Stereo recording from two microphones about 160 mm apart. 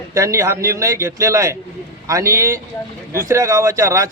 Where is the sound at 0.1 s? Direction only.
20° right (ahead or behind).